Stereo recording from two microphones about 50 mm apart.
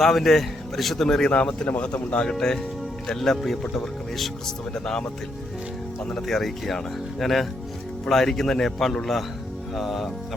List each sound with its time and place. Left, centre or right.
0.0 s speech: centre; by 2.3 s left
2.3 s speech: centre
6.2 s speech: centre